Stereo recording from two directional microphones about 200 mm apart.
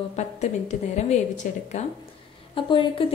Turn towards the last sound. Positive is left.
turn(degrees=25)  # may be behind; listen again after turning